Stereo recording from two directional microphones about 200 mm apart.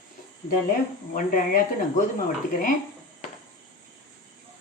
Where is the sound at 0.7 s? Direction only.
45° left (ahead or behind).